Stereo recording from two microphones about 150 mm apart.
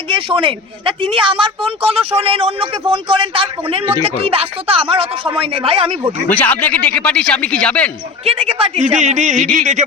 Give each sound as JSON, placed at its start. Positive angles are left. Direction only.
{"t": 0.1, "sound": "a man's voice", "side_deg": -35}
{"t": 6.2, "sound": "speech", "side_deg": 10}
{"t": 8.2, "sound": "a man's voice", "side_deg": -40}